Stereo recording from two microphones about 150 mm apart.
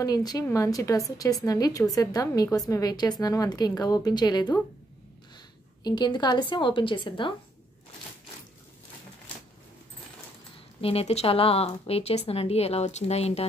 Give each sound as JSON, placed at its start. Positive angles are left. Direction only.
{"t": 0.0, "sound": "a woman's voice", "side_deg": 25}
{"t": 5.9, "sound": "a woman's voice", "side_deg": 30}
{"t": 10.8, "sound": "speech", "side_deg": 40}